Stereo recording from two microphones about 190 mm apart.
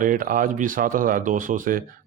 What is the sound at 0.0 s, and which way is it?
A man's voice, 45° right (ahead or behind).